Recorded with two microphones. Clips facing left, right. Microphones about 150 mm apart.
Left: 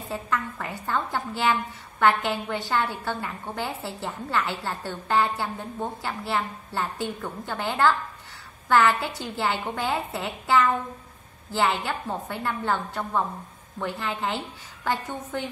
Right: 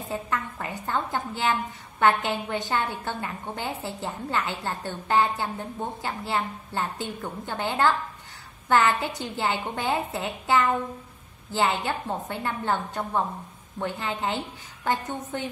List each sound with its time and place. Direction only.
0.1 s a woman's voice: 20° right (ahead or behind)